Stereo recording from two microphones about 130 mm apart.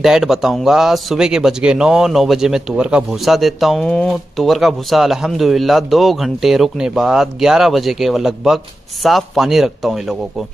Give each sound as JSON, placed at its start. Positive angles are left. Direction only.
{"t": 0.0, "sound": "a man's voice", "side_deg": 0}